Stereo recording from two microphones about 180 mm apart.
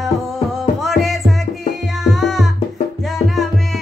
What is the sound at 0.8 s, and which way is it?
Music, centre (ahead or behind).